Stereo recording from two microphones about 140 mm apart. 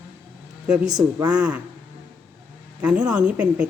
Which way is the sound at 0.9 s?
30° right (ahead or behind).